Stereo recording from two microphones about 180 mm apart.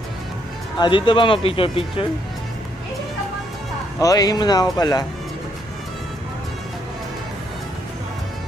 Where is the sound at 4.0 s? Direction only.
20° left (ahead or behind).